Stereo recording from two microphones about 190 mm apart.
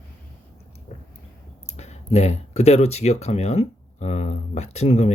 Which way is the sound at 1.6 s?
35° left (ahead or behind).